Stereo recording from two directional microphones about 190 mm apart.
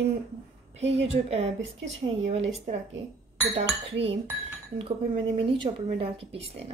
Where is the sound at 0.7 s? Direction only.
35° right (ahead or behind).